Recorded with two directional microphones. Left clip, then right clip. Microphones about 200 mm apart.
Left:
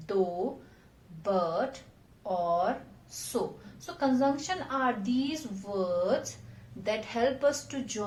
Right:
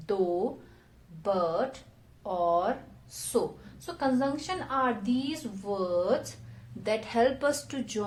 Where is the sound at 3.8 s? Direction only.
40° right (ahead or behind).